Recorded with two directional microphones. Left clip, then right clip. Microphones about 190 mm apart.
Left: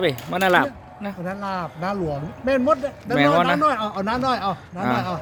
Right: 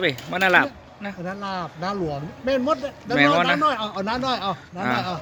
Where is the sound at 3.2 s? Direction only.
10° left (ahead or behind).